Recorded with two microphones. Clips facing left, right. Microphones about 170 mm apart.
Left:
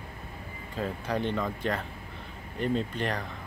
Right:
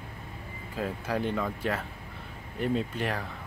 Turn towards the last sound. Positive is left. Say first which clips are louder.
# even
turn(degrees=-5)  # may be behind; listen again after turning